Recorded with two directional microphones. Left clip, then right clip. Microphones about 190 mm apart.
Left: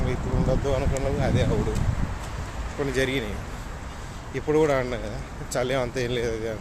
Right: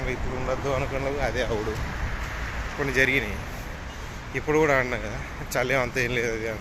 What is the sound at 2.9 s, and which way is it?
Speech, 15° left (ahead or behind).